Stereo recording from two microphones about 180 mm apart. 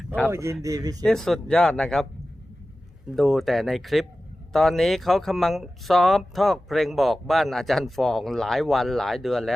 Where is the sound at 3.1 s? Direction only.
Centre (ahead or behind).